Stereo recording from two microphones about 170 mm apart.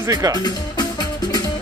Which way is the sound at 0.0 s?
20° right (ahead or behind).